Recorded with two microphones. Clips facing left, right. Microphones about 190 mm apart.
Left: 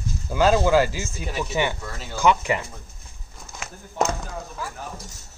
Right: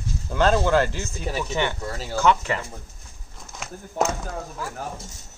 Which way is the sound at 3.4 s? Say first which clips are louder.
Right 2 dB; centre (ahead or behind).